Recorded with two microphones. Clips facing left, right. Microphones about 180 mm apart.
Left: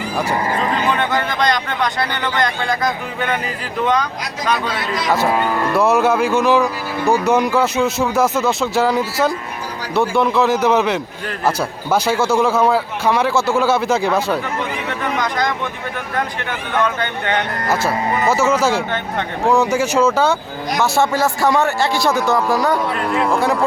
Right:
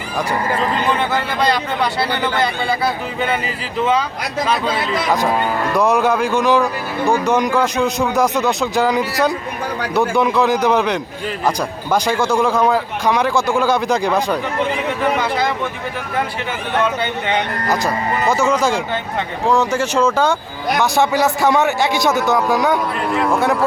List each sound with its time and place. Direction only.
1.1 s a man's voice: 5° right (ahead or behind)
5.7 s a man's voice: 5° left (ahead or behind)
15.2 s a man's voice: 10° right (ahead or behind)
16.8 s a man's voice: 10° right (ahead or behind)
17.7 s a man's voice: 5° left (ahead or behind)
21.4 s a man's voice: centre (ahead or behind)
21.8 s speech: 20° right (ahead or behind)
22.4 s a man's voice: centre (ahead or behind)